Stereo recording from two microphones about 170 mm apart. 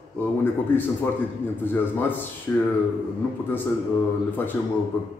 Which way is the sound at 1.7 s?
10° left (ahead or behind).